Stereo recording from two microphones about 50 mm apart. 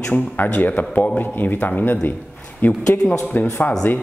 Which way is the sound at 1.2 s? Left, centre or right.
Left.